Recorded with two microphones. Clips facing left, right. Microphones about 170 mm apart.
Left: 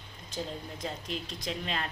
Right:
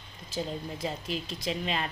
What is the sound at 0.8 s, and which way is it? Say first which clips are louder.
A woman's voice: right 2 dB; 5° right (ahead or behind).